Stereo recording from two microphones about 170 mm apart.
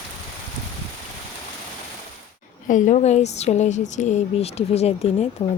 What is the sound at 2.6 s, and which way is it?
Speech, 50° left (ahead or behind).